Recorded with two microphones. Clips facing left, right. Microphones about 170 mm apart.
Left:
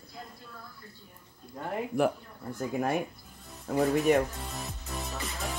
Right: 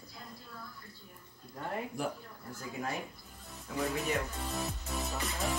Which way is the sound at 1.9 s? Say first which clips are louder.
Left 12 dB; 60° left (ahead or behind).